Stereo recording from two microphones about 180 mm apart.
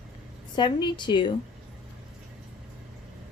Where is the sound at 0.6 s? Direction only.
25° left (ahead or behind).